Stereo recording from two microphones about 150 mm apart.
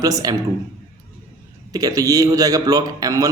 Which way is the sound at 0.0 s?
25° right (ahead or behind).